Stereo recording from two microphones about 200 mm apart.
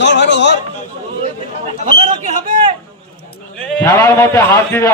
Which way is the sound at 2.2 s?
35° right (ahead or behind).